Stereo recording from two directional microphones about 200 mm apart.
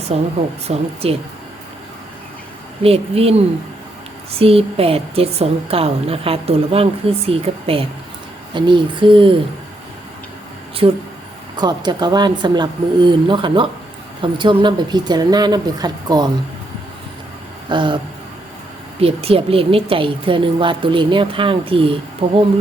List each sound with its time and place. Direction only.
0.1 s a woman's voice: 30° right (ahead or behind)
2.8 s a woman's voice: 30° right (ahead or behind)
10.8 s a woman's voice: 25° right (ahead or behind)
17.7 s a sound: 25° right (ahead or behind)
18.9 s a woman's voice: 30° right (ahead or behind)